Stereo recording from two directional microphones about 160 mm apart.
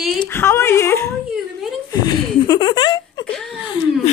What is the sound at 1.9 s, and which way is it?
Laughter, 25° left (ahead or behind).